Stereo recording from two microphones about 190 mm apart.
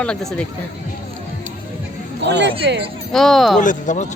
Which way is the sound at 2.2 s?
65° right (ahead or behind).